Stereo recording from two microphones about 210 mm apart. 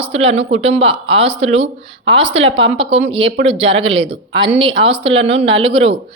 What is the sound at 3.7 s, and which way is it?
Speech, 60° right (ahead or behind).